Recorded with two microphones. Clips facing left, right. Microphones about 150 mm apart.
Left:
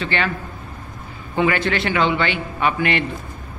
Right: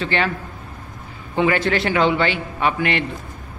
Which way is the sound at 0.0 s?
35° right (ahead or behind).